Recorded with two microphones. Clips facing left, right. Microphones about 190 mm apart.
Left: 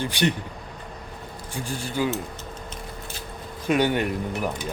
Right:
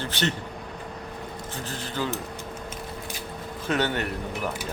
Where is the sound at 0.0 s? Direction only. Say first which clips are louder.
Left 4 dB; 15° left (ahead or behind).